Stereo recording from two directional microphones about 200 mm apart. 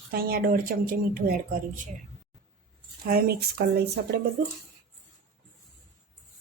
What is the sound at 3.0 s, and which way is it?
Speech, 50° right (ahead or behind).